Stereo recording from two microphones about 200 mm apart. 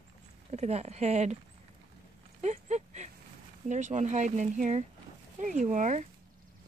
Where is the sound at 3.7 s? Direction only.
35° right (ahead or behind).